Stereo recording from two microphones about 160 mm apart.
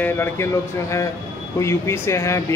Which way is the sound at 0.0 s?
15° left (ahead or behind).